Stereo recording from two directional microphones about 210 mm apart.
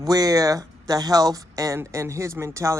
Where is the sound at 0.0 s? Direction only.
15° right (ahead or behind).